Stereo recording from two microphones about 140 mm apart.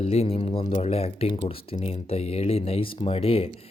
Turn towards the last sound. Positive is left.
turn(degrees=45)  # may be behind; listen again after turning